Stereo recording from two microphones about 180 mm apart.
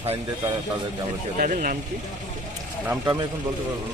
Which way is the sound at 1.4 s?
50° right (ahead or behind).